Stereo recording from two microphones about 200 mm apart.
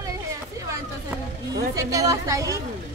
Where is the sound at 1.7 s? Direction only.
15° right (ahead or behind).